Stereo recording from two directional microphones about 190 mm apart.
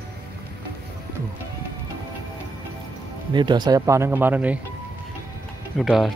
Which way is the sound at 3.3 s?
25° right (ahead or behind).